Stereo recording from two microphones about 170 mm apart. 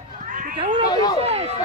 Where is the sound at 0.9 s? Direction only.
25° left (ahead or behind).